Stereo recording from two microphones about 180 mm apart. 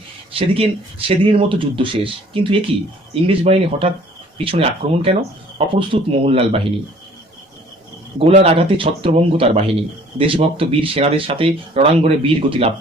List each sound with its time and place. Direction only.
0.3 s speech: 30° right (ahead or behind)
8.2 s speech: 35° right (ahead or behind)